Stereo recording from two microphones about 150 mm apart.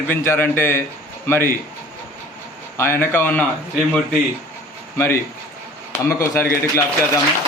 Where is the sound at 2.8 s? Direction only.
15° left (ahead or behind).